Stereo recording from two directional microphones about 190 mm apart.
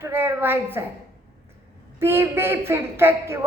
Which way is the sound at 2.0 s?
10° right (ahead or behind).